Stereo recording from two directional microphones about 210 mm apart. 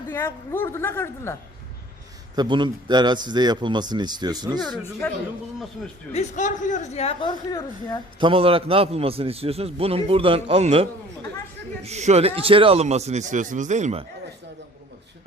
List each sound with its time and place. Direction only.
0.1 s a woman's voice: 10° left (ahead or behind)
2.3 s a man's voice: 20° right (ahead or behind)
5.0 s a woman's voice: 10° left (ahead or behind)
6.1 s speech: 35° left (ahead or behind); by 8.0 s 20° left (ahead or behind)
8.2 s a man's voice: 25° right (ahead or behind)